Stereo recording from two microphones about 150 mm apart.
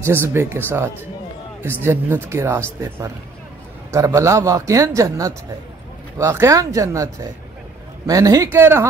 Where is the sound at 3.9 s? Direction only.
20° right (ahead or behind).